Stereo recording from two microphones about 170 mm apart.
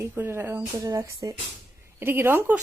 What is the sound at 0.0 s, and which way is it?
Speech, 15° right (ahead or behind).